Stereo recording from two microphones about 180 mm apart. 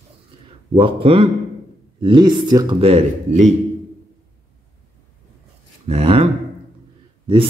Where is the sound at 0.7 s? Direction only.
30° right (ahead or behind).